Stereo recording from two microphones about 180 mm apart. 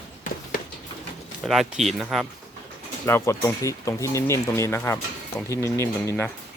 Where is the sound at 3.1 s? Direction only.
15° left (ahead or behind).